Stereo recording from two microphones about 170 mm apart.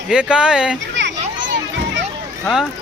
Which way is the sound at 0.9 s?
90° right.